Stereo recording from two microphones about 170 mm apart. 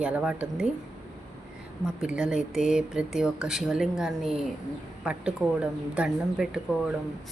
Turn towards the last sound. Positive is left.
turn(degrees=-5)  # may be behind; listen again after turning